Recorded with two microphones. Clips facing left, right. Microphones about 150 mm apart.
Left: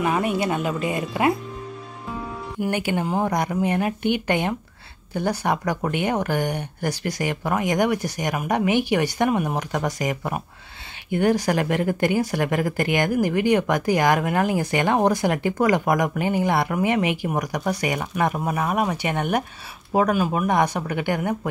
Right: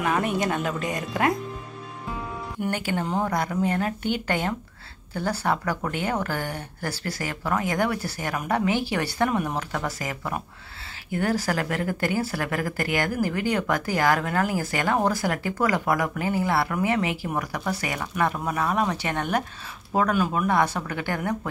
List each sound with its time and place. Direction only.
0.0 s speech: 5° left (ahead or behind)
2.6 s speech: 15° left (ahead or behind)